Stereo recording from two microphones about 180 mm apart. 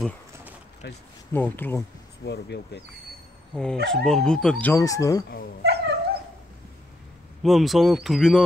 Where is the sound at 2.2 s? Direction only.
70° left (ahead or behind).